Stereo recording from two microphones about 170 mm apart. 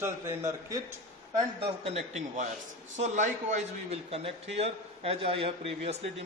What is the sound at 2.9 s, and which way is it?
A man's voice, 45° right (ahead or behind).